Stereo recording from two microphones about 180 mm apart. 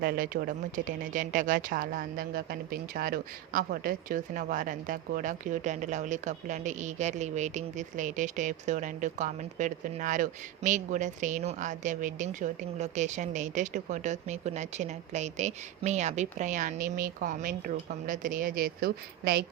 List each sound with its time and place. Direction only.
0.0 s a woman's voice: 55° right (ahead or behind)